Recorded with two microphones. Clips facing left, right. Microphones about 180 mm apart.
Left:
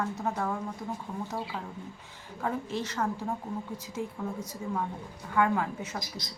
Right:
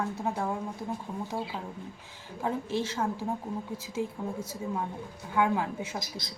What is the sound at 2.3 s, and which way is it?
A woman's voice, 10° right (ahead or behind).